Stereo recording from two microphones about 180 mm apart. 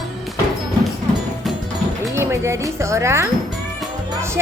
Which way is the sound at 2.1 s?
15° right (ahead or behind).